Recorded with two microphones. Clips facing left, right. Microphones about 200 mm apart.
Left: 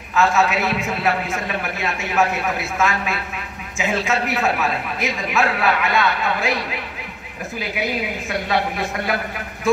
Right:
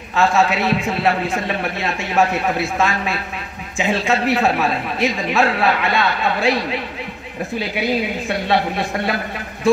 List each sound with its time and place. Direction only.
0.1 s a woman's voice: 30° right (ahead or behind)
8.3 s a woman's voice: 30° right (ahead or behind)